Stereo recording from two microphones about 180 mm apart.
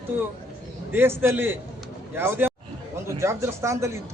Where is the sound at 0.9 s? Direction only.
10° right (ahead or behind).